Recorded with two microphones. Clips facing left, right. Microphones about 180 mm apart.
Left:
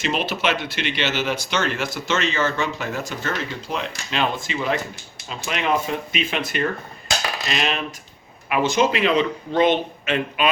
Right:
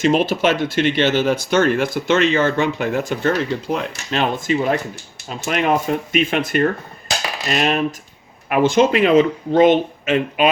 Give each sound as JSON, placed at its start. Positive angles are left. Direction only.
{"t": 0.0, "sound": "speech", "side_deg": -50}